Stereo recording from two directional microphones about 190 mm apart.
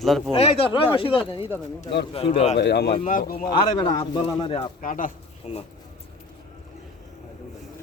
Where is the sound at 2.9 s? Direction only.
35° left (ahead or behind).